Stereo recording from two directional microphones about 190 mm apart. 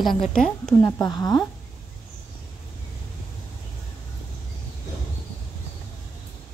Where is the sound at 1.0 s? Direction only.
20° left (ahead or behind).